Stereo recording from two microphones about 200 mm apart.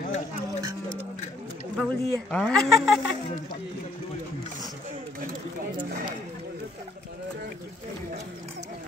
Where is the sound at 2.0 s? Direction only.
5° left (ahead or behind).